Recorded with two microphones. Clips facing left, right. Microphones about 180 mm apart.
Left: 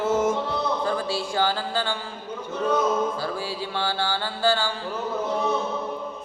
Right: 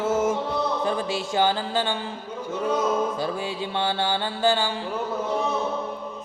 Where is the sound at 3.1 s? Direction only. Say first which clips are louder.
Right 2 dB; 20° right (ahead or behind).